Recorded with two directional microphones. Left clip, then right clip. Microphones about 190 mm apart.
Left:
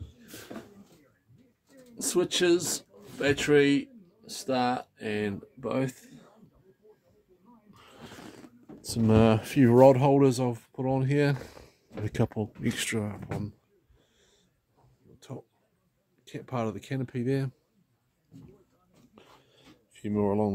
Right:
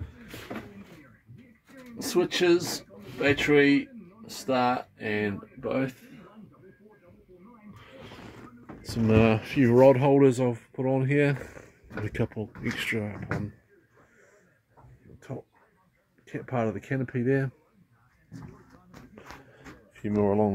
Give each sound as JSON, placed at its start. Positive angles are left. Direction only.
{"t": 2.0, "sound": "speech", "side_deg": 15}
{"t": 7.7, "sound": "a sound", "side_deg": 25}
{"t": 8.8, "sound": "speech", "side_deg": 30}
{"t": 12.0, "sound": "speech", "side_deg": 35}
{"t": 15.1, "sound": "a sound", "side_deg": 5}
{"t": 16.3, "sound": "speech", "side_deg": 15}
{"t": 17.2, "sound": "speech", "side_deg": 0}
{"t": 20.0, "sound": "speech", "side_deg": 10}